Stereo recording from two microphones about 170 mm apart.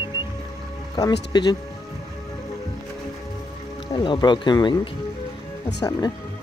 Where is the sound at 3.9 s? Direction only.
30° left (ahead or behind).